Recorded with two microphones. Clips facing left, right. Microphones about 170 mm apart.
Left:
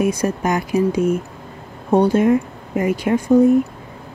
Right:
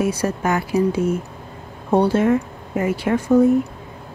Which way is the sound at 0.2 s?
15° left (ahead or behind).